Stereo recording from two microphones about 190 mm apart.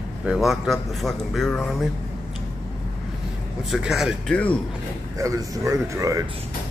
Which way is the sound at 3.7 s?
Centre (ahead or behind).